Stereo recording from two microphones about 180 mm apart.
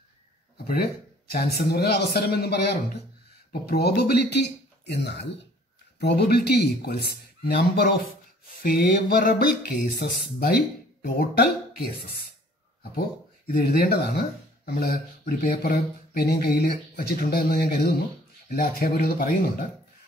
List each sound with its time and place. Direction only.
1.3 s speech: 60° left (ahead or behind)
13.5 s speech: 60° left (ahead or behind)